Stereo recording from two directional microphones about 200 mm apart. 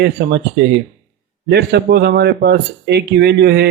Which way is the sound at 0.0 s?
55° right (ahead or behind).